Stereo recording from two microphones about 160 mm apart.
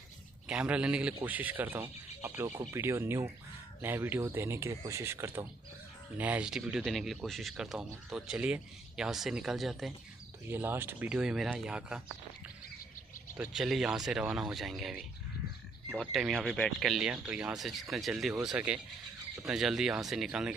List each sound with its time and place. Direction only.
0.5 s speech: 5° right (ahead or behind)
10.5 s speech: 15° right (ahead or behind)
13.4 s speech: 5° right (ahead or behind)